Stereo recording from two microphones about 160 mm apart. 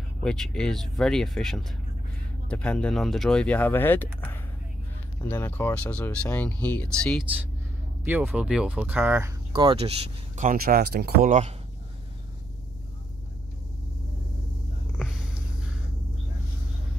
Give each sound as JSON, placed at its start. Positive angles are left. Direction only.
{"t": 0.2, "sound": "speech", "side_deg": 5}
{"t": 8.0, "sound": "speech", "side_deg": -10}
{"t": 9.5, "sound": "speech", "side_deg": -30}
{"t": 11.2, "sound": "speech", "side_deg": -45}
{"t": 15.0, "sound": "a sound", "side_deg": -5}